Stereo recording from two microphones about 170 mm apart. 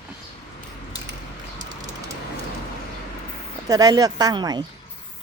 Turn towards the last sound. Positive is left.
turn(degrees=-25)  # may be behind; listen again after turning